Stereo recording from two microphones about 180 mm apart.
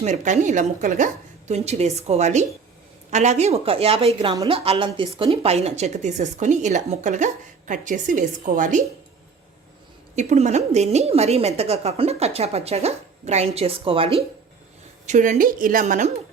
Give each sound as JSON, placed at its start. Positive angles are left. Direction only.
{"t": 0.0, "sound": "a woman's voice", "side_deg": -40}
{"t": 10.2, "sound": "a woman's voice", "side_deg": -40}
{"t": 15.0, "sound": "a woman's voice", "side_deg": -40}